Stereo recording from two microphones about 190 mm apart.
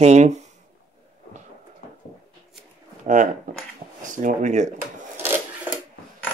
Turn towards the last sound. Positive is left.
turn(degrees=-10)  # may be behind; listen again after turning